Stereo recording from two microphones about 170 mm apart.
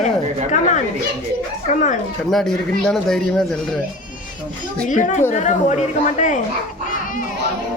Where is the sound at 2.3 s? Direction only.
Centre (ahead or behind).